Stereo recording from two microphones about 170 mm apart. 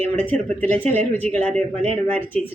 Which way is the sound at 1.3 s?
40° right (ahead or behind).